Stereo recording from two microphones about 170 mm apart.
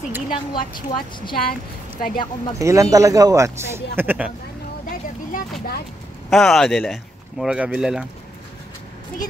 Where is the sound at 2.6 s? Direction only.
20° right (ahead or behind).